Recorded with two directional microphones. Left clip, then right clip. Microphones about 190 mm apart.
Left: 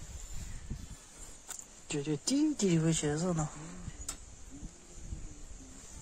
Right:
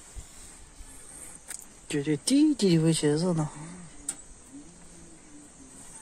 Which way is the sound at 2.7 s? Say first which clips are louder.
Right 7 dB; 5° right (ahead or behind).